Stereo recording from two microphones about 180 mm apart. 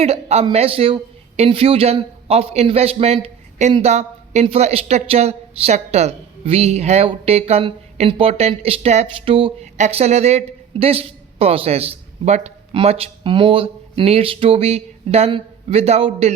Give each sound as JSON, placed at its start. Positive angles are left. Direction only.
{"t": 0.0, "sound": "speech", "side_deg": -35}